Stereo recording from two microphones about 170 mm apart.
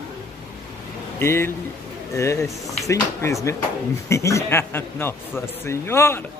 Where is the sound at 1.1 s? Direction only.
15° left (ahead or behind).